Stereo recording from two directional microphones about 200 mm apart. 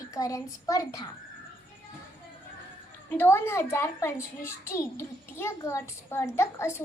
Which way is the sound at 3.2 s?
10° left (ahead or behind).